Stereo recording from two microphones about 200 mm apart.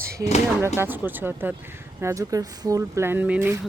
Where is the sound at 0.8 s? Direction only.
10° right (ahead or behind).